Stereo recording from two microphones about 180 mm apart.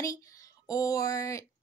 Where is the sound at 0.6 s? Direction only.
20° left (ahead or behind).